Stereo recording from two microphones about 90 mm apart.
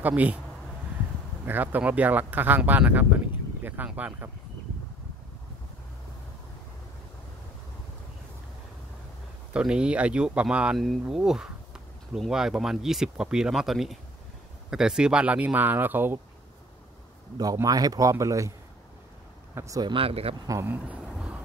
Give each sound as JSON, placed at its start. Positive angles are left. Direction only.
{"t": 0.0, "sound": "speech", "side_deg": -15}
{"t": 1.4, "sound": "speech", "side_deg": -20}
{"t": 9.5, "sound": "speech", "side_deg": -10}
{"t": 17.6, "sound": "speech", "side_deg": -45}
{"t": 19.5, "sound": "speech", "side_deg": -35}
{"t": 19.8, "sound": "speech", "side_deg": -80}
{"t": 20.6, "sound": "speech", "side_deg": -20}